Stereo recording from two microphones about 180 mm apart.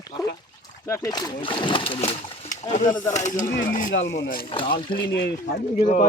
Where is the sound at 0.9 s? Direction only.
15° left (ahead or behind); by 3.9 s 45° left (ahead or behind).